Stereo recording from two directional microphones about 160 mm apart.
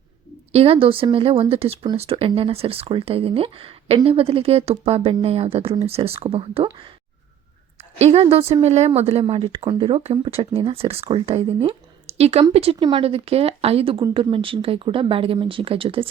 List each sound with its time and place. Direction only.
0.5 s speech: 40° right (ahead or behind)
8.0 s speech: 35° right (ahead or behind)